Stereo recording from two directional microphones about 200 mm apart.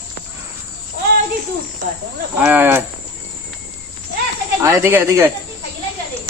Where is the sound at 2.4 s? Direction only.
10° right (ahead or behind).